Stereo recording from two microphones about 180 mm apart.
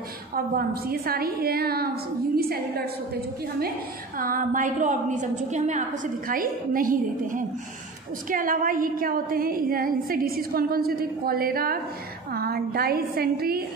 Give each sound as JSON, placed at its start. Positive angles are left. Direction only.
{"t": 0.6, "sound": "a woman's voice", "side_deg": -55}
{"t": 4.2, "sound": "a woman's voice", "side_deg": -50}